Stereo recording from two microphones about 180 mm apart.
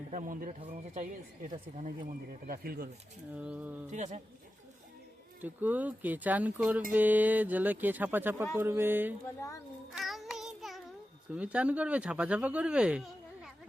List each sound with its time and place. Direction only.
0.1 s speech: 45° right (ahead or behind)
1.8 s speech: 50° right (ahead or behind)
3.3 s speech: 10° right (ahead or behind)
3.9 s speech: 40° right (ahead or behind)
5.4 s speech: 10° right (ahead or behind)
9.9 s child singing: centre (ahead or behind)
11.3 s speech: 5° right (ahead or behind)